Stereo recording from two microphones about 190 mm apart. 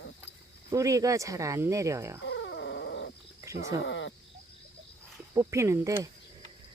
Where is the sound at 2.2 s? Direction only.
70° left (ahead or behind).